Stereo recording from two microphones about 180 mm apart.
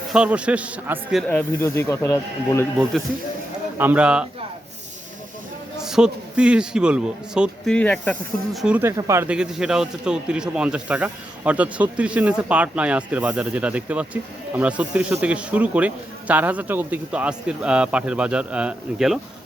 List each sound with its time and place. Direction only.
0.1 s a man's voice: 5° right (ahead or behind)
1.3 s speech: 10° left (ahead or behind)
3.8 s a man's voice: 10° right (ahead or behind)
5.7 s a man's voice: 5° right (ahead or behind)
8.6 s a man's voice: 10° right (ahead or behind)